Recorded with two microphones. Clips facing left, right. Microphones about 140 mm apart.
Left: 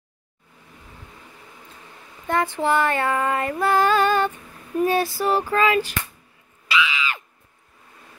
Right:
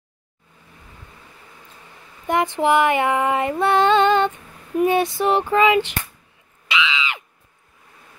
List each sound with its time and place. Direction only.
2.2 s female singing: 15° right (ahead or behind)
6.7 s screaming: 20° right (ahead or behind)